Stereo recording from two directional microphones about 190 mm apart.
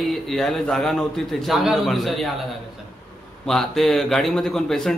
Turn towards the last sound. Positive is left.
turn(degrees=0)  # may be behind; listen again after turning